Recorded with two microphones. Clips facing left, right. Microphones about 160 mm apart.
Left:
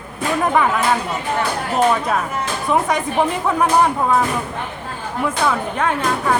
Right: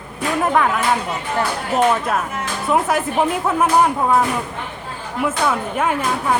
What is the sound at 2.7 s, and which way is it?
Speech, 5° right (ahead or behind).